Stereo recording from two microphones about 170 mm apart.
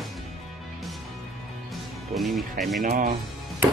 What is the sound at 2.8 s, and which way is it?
Speech, 55° right (ahead or behind).